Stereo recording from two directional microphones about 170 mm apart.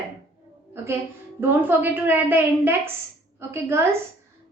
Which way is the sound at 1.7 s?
10° right (ahead or behind).